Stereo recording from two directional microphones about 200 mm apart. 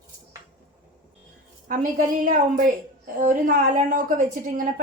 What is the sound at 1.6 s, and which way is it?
A woman's voice, 40° right (ahead or behind).